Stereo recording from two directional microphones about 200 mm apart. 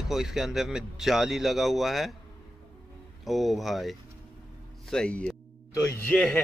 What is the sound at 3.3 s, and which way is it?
Speech, centre (ahead or behind).